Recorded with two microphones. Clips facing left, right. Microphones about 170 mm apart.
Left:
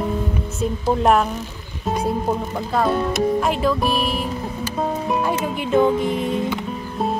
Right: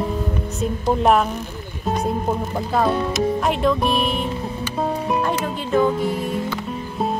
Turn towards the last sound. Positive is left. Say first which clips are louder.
# left 2 dB
turn(degrees=20)  # may be behind; listen again after turning